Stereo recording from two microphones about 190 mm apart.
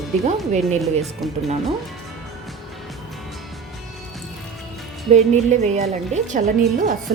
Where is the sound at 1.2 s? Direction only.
Centre (ahead or behind).